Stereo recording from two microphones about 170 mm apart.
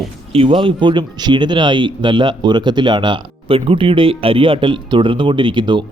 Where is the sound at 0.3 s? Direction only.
30° right (ahead or behind).